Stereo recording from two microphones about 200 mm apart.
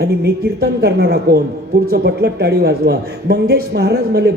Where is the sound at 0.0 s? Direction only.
50° right (ahead or behind).